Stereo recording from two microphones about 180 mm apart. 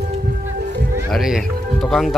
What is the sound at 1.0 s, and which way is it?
Music, centre (ahead or behind).